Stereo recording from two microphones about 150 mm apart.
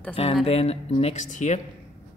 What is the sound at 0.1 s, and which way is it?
Speech, 40° left (ahead or behind).